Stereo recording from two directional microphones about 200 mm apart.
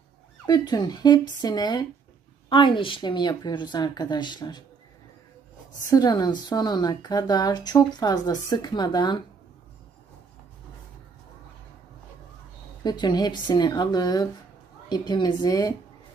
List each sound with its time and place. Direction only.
0.5 s speech: 20° left (ahead or behind)
5.9 s speech: 20° left (ahead or behind)
12.8 s speech: 20° left (ahead or behind)